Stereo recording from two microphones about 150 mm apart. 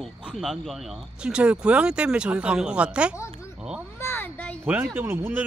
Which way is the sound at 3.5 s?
5° right (ahead or behind).